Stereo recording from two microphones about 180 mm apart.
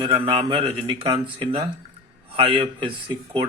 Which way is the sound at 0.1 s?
30° right (ahead or behind).